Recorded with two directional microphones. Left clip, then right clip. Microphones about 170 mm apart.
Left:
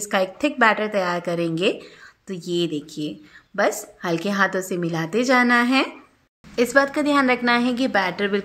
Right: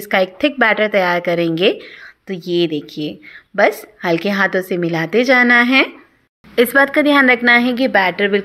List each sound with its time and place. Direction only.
0.0 s a woman's voice: 20° right (ahead or behind)
6.5 s a woman's voice: 35° right (ahead or behind); by 8.4 s 20° right (ahead or behind)